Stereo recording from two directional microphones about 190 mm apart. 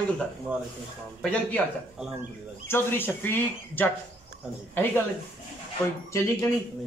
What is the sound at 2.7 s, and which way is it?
Speech, 10° left (ahead or behind).